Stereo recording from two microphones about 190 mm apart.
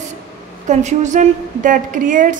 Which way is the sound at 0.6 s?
40° right (ahead or behind).